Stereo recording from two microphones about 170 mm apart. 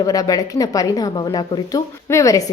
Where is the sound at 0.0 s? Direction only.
20° left (ahead or behind).